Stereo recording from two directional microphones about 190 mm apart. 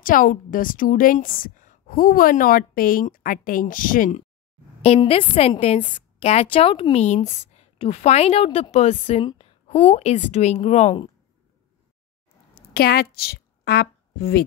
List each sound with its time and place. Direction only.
0.0 s a woman's voice: 45° left (ahead or behind)
4.8 s a woman's voice: 30° left (ahead or behind)
12.5 s a sound: 55° left (ahead or behind)